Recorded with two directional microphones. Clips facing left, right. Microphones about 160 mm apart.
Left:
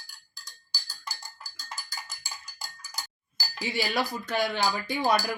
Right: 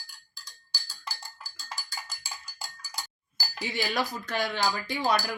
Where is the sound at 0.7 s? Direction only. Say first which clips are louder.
Even; 30° right (ahead or behind).